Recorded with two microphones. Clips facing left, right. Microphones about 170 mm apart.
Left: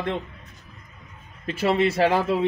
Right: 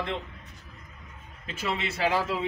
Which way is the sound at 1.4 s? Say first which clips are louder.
Left 9 dB; 60° left (ahead or behind).